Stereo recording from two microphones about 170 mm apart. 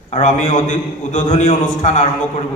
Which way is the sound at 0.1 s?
45° left (ahead or behind).